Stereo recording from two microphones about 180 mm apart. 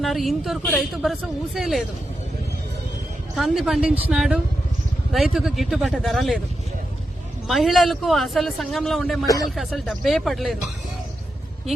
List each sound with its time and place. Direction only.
0.0 s a man's voice: centre (ahead or behind)
3.3 s a man's voice: centre (ahead or behind)
7.4 s a man's voice: centre (ahead or behind)
9.2 s speech: 20° left (ahead or behind)
9.6 s a man's voice: centre (ahead or behind)